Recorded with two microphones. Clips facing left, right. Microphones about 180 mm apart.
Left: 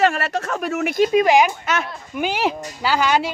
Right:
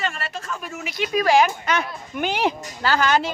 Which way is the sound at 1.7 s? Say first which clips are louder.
Even; 5° left (ahead or behind).